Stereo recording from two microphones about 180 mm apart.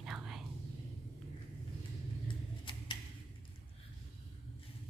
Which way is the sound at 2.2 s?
25° left (ahead or behind).